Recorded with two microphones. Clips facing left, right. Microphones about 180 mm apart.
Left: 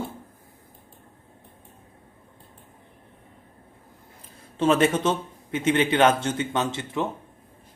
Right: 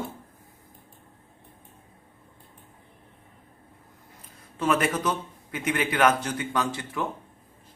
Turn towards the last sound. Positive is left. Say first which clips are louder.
# left 2 dB
turn(degrees=20)  # may be behind; listen again after turning